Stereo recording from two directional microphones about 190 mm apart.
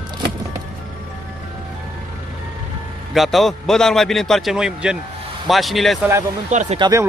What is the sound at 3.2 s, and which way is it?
A man's voice, centre (ahead or behind).